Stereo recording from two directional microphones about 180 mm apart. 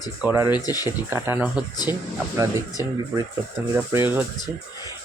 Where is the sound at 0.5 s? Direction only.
20° left (ahead or behind).